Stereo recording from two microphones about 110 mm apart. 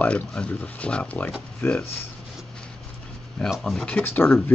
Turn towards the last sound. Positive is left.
turn(degrees=15)  # may be behind; listen again after turning